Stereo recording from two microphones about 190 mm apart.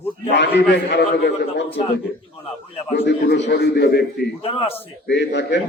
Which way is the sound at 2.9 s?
60° left (ahead or behind).